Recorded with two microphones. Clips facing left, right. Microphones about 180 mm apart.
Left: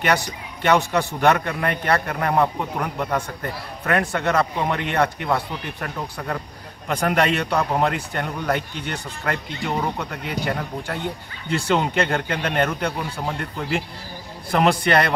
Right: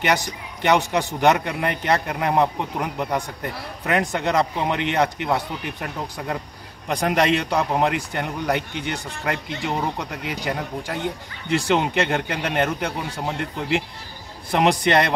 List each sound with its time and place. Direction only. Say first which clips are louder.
0.0 s a man's voice: left 1 dB; 15° right (ahead or behind)